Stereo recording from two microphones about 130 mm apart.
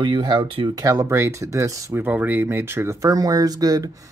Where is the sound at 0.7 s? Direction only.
25° right (ahead or behind).